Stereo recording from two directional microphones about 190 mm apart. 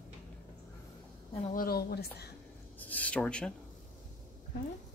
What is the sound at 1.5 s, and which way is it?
Speech, 55° left (ahead or behind).